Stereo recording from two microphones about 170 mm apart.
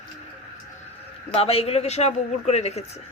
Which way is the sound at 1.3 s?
35° left (ahead or behind).